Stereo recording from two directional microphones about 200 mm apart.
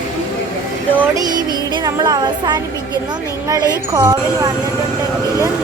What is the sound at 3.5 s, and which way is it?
Speech, 20° right (ahead or behind).